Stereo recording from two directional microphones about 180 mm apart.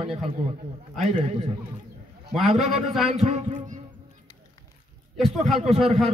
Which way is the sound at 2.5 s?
35° right (ahead or behind).